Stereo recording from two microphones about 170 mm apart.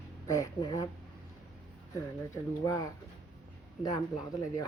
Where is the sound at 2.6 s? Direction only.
20° left (ahead or behind).